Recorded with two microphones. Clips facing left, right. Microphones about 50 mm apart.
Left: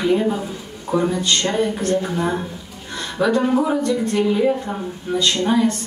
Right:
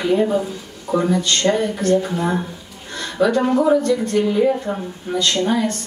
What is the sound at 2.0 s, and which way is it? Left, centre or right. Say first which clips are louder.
Speech: even; centre.